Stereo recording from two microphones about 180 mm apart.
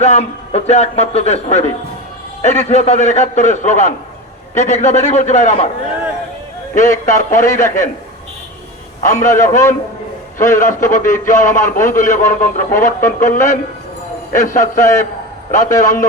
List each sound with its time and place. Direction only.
0.0 s a man's voice: 40° left (ahead or behind)
6.7 s a man's voice: 45° left (ahead or behind)
9.0 s a man's voice: 45° left (ahead or behind)